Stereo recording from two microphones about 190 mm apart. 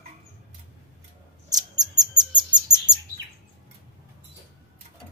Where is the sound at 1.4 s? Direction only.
20° right (ahead or behind).